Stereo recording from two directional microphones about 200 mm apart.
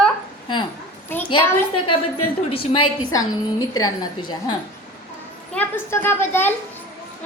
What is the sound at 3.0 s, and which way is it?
A woman's voice, 20° left (ahead or behind).